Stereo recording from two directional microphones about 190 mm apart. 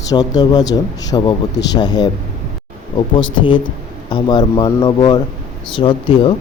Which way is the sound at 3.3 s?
25° left (ahead or behind).